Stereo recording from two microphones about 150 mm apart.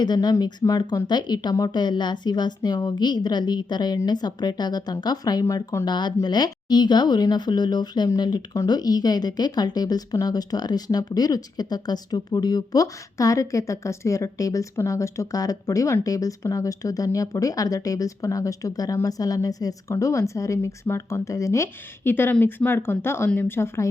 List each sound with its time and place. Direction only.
0.0 s speech: 25° left (ahead or behind)